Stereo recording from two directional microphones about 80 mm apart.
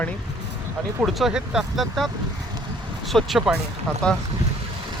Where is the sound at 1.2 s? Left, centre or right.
Centre.